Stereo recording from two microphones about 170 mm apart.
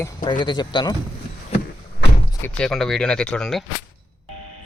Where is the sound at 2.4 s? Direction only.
5° left (ahead or behind).